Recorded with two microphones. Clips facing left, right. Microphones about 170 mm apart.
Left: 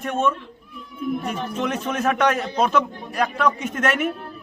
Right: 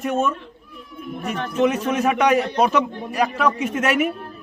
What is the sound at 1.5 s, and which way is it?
A man's voice, 10° right (ahead or behind).